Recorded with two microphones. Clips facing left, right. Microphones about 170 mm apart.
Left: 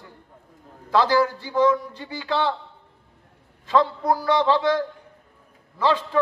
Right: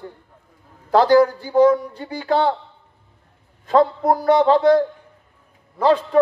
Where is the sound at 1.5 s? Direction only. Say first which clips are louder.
Right 6 dB; 40° right (ahead or behind).